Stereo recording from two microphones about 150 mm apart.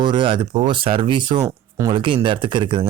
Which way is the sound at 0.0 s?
30° right (ahead or behind).